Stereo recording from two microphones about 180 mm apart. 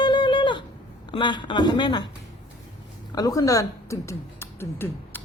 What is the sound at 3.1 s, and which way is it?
Speech, 20° left (ahead or behind).